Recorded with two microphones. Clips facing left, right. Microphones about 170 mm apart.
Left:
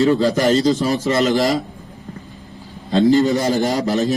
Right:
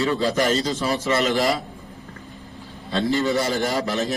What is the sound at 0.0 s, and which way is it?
A man's voice, 40° left (ahead or behind).